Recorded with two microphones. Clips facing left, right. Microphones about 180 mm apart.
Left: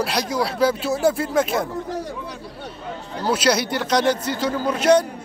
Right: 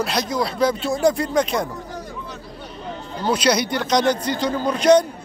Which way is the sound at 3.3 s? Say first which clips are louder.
Right 1 dB; 5° left (ahead or behind).